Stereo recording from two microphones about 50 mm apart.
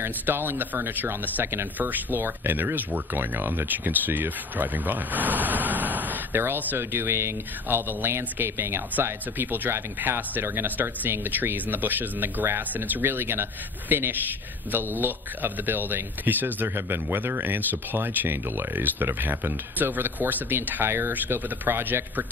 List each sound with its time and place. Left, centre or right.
0.0 s speech: right
1.4 s speech: right
1.8 s speech: right
6.8 s speech: right
16.7 s speech: right
20.8 s speech: right